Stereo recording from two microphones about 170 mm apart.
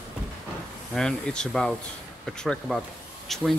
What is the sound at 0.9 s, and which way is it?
Speech, 5° left (ahead or behind).